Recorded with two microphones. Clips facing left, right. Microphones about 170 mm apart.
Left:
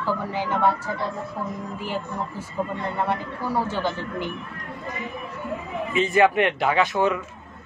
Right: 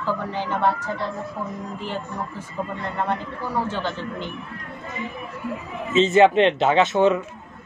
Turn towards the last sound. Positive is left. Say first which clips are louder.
# right 4 dB
turn(degrees=-25)  # may be behind; listen again after turning